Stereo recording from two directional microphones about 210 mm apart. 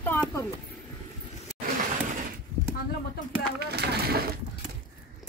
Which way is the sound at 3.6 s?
50° right (ahead or behind).